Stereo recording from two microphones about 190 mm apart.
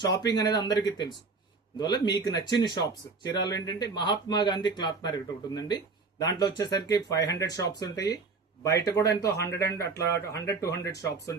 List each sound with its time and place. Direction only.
0.0 s speech: 20° left (ahead or behind)